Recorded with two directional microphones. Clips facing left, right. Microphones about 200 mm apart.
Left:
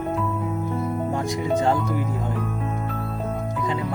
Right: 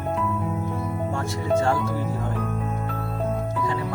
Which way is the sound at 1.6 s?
15° left (ahead or behind).